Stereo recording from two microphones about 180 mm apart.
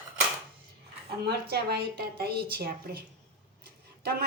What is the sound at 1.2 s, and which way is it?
A woman's voice, 60° right (ahead or behind).